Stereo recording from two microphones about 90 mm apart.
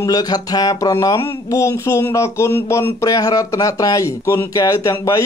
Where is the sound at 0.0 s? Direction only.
45° left (ahead or behind).